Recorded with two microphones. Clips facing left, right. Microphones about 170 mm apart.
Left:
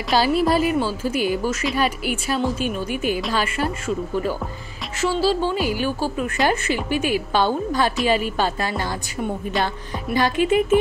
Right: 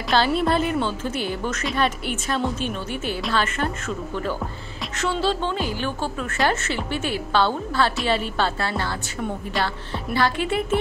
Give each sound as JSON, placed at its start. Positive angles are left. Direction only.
{"t": 0.1, "sound": "a woman's voice", "side_deg": 10}
{"t": 10.1, "sound": "a woman's voice", "side_deg": 15}